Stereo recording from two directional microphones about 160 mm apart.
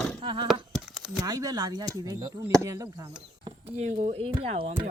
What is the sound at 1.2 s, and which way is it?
Speech, 25° right (ahead or behind).